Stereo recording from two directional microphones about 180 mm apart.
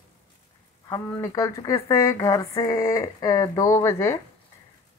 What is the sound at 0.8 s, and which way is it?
A woman's voice, 20° left (ahead or behind).